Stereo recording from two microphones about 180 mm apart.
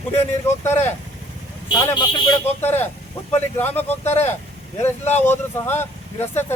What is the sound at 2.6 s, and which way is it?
Speech, 10° left (ahead or behind).